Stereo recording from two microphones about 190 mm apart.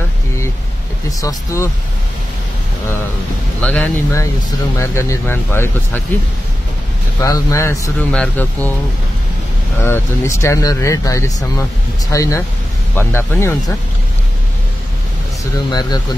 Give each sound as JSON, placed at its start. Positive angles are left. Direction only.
{"t": 1.2, "sound": "speech", "side_deg": 15}
{"t": 3.6, "sound": "speech", "side_deg": 5}
{"t": 7.2, "sound": "speech", "side_deg": 15}
{"t": 9.8, "sound": "speech", "side_deg": 15}
{"t": 15.7, "sound": "speech", "side_deg": 20}